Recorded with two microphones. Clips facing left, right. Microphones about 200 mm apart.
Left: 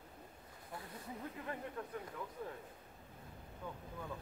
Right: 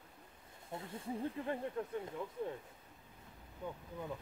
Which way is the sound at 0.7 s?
25° right (ahead or behind).